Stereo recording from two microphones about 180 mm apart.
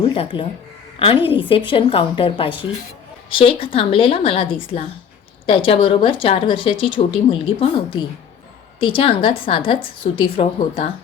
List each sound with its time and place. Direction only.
0.1 s a woman's voice: 25° left (ahead or behind)